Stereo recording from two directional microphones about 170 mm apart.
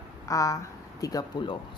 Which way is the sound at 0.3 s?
20° left (ahead or behind).